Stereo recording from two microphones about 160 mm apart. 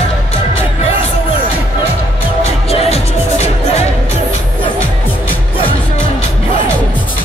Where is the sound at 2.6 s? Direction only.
40° left (ahead or behind).